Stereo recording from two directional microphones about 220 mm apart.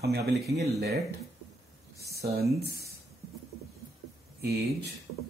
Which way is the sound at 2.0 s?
45° right (ahead or behind).